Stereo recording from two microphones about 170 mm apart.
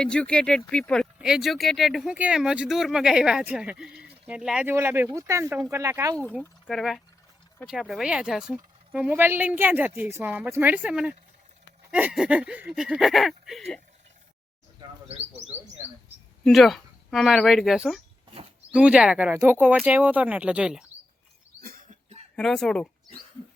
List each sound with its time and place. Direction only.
0.0 s speech: 5° left (ahead or behind); by 6.1 s 15° right (ahead or behind)
6.1 s speech: 10° left (ahead or behind)
16.4 s speech: centre (ahead or behind)
21.6 s cough: 55° right (ahead or behind)
22.4 s speech: 5° left (ahead or behind)